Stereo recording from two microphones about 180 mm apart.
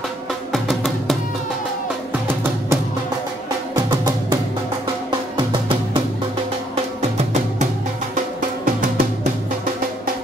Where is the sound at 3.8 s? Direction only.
20° right (ahead or behind).